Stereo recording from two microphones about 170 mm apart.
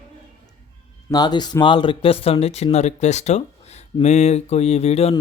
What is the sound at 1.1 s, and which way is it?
Speech, 25° left (ahead or behind).